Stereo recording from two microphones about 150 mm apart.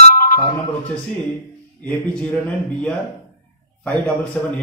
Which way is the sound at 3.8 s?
10° left (ahead or behind).